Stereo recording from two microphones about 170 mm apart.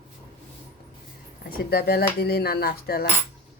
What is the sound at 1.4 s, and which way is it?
Cutlery, 65° left (ahead or behind).